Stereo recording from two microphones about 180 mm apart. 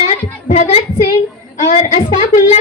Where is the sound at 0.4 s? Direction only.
40° left (ahead or behind).